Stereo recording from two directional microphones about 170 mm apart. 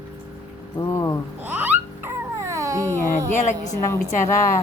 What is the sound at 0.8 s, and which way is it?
Speech, 15° left (ahead or behind).